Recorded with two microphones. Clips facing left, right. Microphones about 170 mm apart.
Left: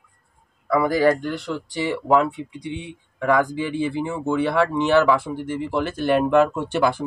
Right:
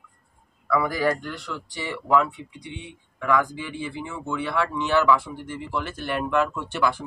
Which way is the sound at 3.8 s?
30° left (ahead or behind).